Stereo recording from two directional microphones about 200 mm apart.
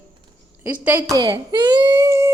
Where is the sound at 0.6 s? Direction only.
10° right (ahead or behind).